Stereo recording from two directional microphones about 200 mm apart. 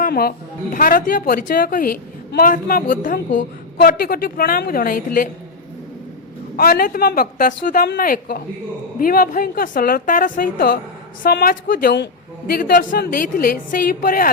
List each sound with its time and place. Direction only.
0.0 s speech: 50° left (ahead or behind)
6.6 s speech: 50° left (ahead or behind)